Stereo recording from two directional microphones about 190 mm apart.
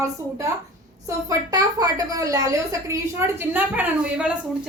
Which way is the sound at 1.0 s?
20° right (ahead or behind).